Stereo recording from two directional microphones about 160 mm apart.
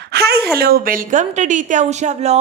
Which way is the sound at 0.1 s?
85° right.